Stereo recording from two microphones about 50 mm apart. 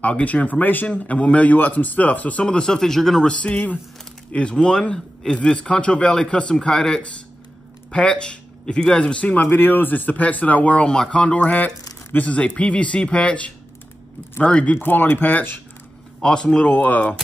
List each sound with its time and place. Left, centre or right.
0.2 s a man's voice: left
0.9 s a man's voice: left
2.4 s a man's voice: centre
3.3 s speech: left
4.3 s a man's voice: centre
11.3 s speech: left
14.8 s a man's voice: left
16.2 s a man's voice: centre
16.6 s speech: left